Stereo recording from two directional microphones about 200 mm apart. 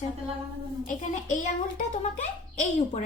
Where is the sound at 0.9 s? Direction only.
40° left (ahead or behind).